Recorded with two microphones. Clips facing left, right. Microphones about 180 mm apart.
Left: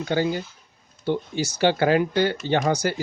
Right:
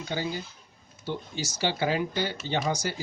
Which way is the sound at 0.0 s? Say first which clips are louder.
Left 8 dB; 60° left (ahead or behind).